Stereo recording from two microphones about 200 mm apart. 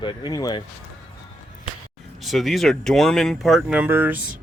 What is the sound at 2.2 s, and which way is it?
Speech, centre (ahead or behind).